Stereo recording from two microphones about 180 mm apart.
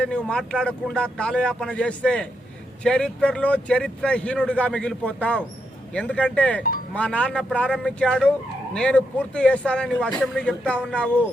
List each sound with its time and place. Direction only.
0.0 s speech: 5° left (ahead or behind)